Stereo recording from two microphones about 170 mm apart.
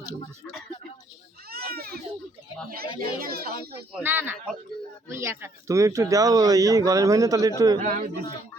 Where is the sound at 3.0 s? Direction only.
60° right (ahead or behind).